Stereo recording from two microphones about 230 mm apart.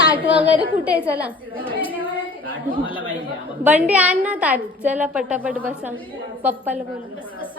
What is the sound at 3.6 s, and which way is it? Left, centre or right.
A woman's voice, centre.